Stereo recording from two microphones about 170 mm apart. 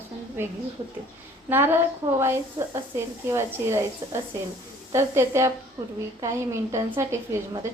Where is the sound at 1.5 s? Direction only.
10° right (ahead or behind).